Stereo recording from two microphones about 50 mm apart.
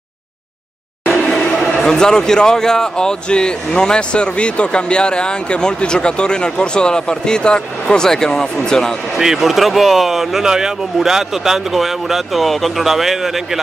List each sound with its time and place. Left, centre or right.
1.8 s a man's voice: centre
9.1 s speech: centre